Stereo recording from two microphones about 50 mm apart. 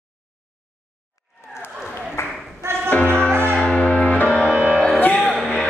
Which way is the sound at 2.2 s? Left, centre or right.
Left.